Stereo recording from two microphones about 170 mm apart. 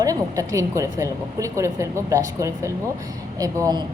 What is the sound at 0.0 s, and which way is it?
A woman's voice, 20° right (ahead or behind).